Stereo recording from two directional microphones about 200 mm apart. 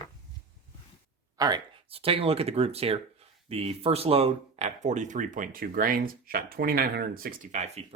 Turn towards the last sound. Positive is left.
turn(degrees=-40)  # may be behind; listen again after turning